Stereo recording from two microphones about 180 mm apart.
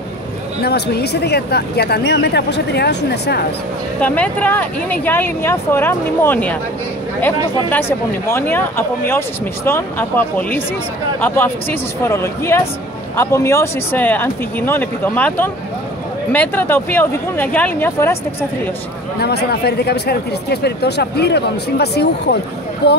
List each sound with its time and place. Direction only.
0.6 s speech: 65° left (ahead or behind)
4.0 s speech: 10° left (ahead or behind)
19.1 s speech: 65° left (ahead or behind)